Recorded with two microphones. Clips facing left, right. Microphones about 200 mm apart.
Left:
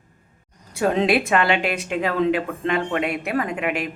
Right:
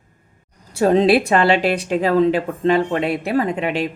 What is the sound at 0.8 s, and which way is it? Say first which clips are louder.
A woman's voice: right 5 dB; 35° right (ahead or behind).